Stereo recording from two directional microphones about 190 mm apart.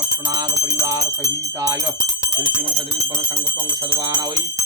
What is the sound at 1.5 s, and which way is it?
Speech, 20° right (ahead or behind).